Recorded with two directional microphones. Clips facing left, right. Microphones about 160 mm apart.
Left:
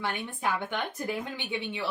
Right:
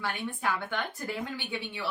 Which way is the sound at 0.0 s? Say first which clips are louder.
Left 1 dB; 20° left (ahead or behind).